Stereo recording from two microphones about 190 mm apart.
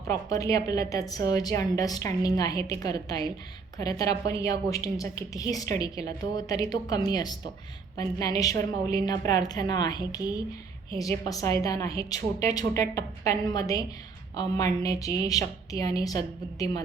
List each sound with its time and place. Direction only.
0.3 s a woman's voice: 15° left (ahead or behind)